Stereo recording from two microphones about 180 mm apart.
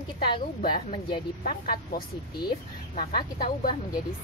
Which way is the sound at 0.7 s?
25° left (ahead or behind).